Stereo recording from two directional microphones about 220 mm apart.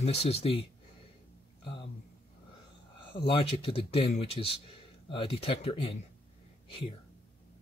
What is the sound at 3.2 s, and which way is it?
Speech, 25° left (ahead or behind).